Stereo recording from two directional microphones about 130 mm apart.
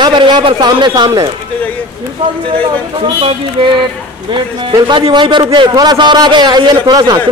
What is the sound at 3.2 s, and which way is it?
Music, 45° right (ahead or behind).